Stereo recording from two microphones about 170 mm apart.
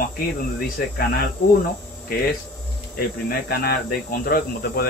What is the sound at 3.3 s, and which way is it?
Speech, 65° left (ahead or behind).